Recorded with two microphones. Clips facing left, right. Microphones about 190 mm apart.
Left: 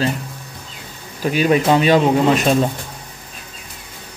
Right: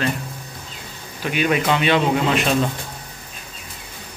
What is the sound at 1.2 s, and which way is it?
Speech, 35° left (ahead or behind).